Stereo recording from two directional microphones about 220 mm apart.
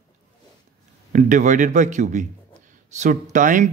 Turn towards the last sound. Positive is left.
turn(degrees=-35)  # may be behind; listen again after turning